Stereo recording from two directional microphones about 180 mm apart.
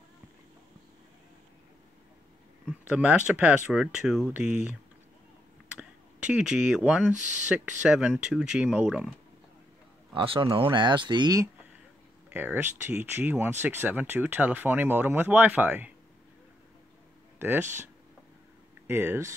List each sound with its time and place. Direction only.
2.6 s speech: 5° right (ahead or behind)
10.1 s speech: 30° right (ahead or behind)
12.3 s speech: 10° right (ahead or behind)
17.4 s speech: 10° right (ahead or behind)
18.9 s speech: 10° right (ahead or behind)